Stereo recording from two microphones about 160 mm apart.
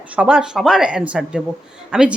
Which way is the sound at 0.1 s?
5° right (ahead or behind).